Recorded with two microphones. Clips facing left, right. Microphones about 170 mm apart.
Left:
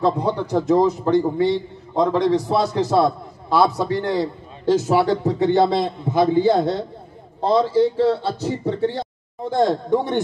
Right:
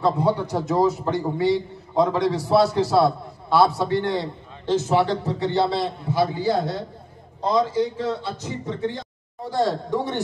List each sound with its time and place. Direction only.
0.0 s a man's voice: 5° right (ahead or behind)
4.6 s a man's voice: 45° left (ahead or behind)
5.7 s a man's voice: 20° left (ahead or behind); by 9.0 s 35° left (ahead or behind)
9.5 s speech: 20° left (ahead or behind)